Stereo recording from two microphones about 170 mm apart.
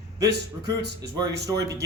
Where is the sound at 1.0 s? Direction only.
25° right (ahead or behind).